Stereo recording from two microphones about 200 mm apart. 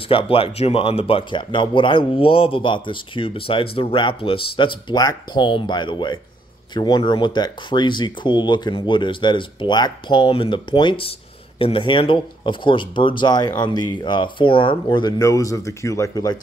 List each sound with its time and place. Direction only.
0.1 s speech: 25° left (ahead or behind)